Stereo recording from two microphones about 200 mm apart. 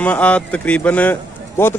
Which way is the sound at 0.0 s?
5° left (ahead or behind).